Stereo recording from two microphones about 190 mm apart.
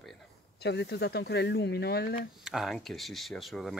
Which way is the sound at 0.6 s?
60° left (ahead or behind).